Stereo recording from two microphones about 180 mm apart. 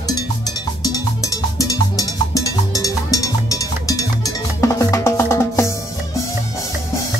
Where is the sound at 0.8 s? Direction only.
20° left (ahead or behind).